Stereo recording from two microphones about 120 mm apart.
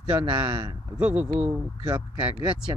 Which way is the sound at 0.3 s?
15° right (ahead or behind).